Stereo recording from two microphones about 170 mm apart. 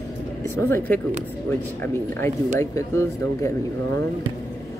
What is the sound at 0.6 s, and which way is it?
Speech, 10° left (ahead or behind).